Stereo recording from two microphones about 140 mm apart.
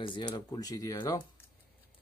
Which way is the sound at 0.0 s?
35° left (ahead or behind).